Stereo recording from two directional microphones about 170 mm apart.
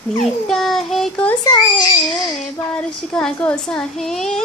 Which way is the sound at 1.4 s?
25° left (ahead or behind).